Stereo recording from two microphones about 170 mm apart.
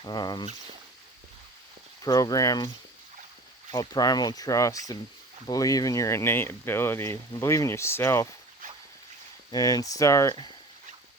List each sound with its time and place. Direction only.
0.0 s speech: 25° left (ahead or behind)
2.0 s speech: 20° left (ahead or behind)
3.7 s speech: 20° left (ahead or behind)
8.6 s boat: 50° right (ahead or behind)
9.5 s speech: 20° left (ahead or behind)